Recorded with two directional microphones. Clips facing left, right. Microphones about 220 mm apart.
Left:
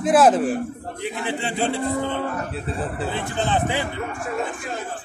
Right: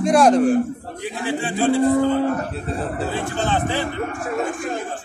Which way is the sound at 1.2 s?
20° left (ahead or behind).